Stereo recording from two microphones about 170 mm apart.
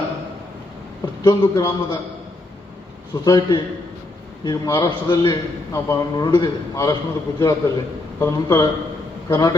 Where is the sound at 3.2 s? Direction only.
25° left (ahead or behind).